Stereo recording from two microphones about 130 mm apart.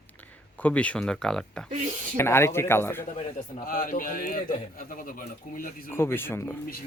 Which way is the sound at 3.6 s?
90° left.